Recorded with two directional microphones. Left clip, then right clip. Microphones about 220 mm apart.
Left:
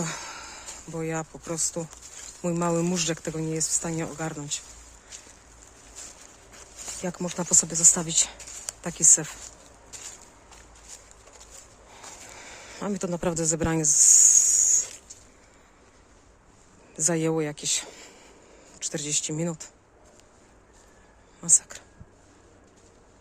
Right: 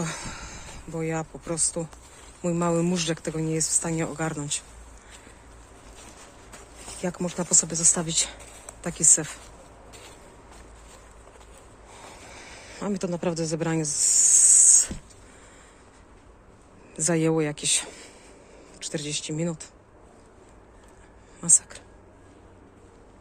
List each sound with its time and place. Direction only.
0.0 s speech: 15° left (ahead or behind)
7.0 s speech: 15° left (ahead or behind)
9.9 s vehicle: centre (ahead or behind)
11.9 s snake: 20° left (ahead or behind)
16.9 s a woman's voice: 15° left (ahead or behind)
21.4 s a woman's voice: 15° left (ahead or behind)